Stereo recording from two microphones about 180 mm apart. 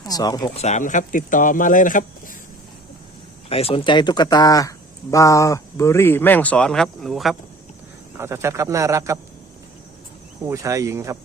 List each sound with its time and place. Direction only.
0.0 s speech: 20° left (ahead or behind)
0.5 s speech: 40° left (ahead or behind)
3.5 s speech: 30° left (ahead or behind); by 7.3 s centre (ahead or behind)
8.2 s a man's voice: 15° right (ahead or behind)
10.4 s a man's voice: 15° right (ahead or behind)